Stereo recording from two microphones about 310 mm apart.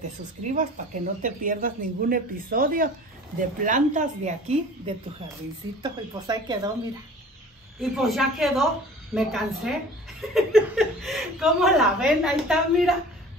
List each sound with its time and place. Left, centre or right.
0.0 s speech: right
7.8 s speech: centre